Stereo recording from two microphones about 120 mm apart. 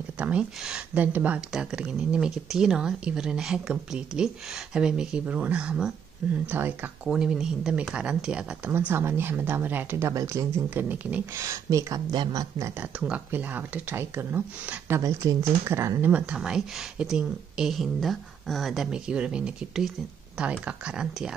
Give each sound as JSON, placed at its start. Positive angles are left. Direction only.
{"t": 0.2, "sound": "speech", "side_deg": -10}
{"t": 8.7, "sound": "speech", "side_deg": -20}
{"t": 11.3, "sound": "speech", "side_deg": -25}
{"t": 16.0, "sound": "speech", "side_deg": -10}